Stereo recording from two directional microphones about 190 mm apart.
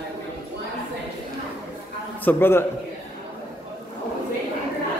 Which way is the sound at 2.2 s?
10° left (ahead or behind).